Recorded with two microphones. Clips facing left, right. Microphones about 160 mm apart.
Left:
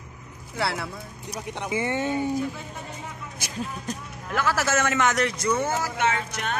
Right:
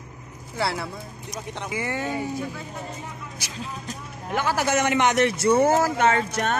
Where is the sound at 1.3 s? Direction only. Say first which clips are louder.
Left 2 dB; 15° left (ahead or behind).